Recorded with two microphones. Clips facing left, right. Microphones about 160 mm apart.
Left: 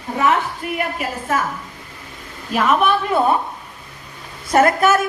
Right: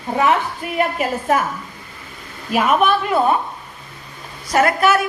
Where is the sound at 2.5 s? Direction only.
10° right (ahead or behind).